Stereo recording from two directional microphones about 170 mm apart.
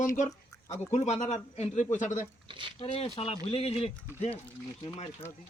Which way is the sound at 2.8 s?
35° left (ahead or behind).